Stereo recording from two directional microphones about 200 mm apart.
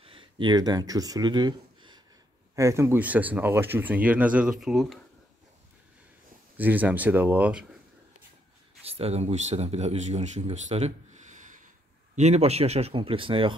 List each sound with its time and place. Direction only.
0.0 s speech: 25° right (ahead or behind); by 4.9 s centre (ahead or behind)
6.5 s speech: 10° right (ahead or behind)
8.8 s speech: 30° right (ahead or behind)